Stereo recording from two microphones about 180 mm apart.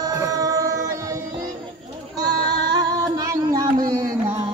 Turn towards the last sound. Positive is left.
turn(degrees=-20)  # may be behind; listen again after turning